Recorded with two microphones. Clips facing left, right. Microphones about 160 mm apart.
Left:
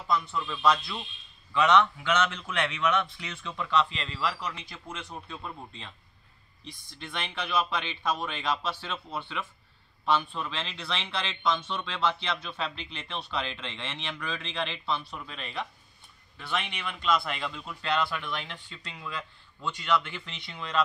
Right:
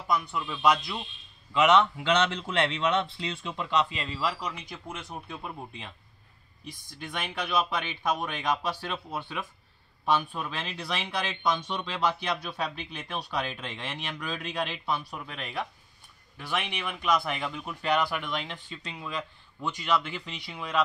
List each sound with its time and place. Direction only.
0.1 s a man's voice: 10° right (ahead or behind)
10.3 s speech: 10° right (ahead or behind)